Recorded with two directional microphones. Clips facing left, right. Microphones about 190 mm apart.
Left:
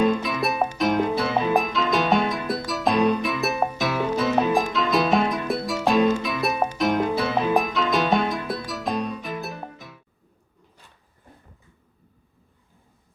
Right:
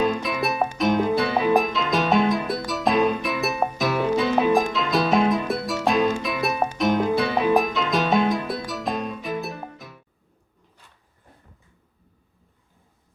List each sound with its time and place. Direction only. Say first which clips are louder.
0.1 s music: left 1 dB; centre (ahead or behind)